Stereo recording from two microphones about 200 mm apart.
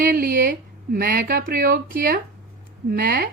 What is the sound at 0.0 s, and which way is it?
A woman's voice, 45° right (ahead or behind).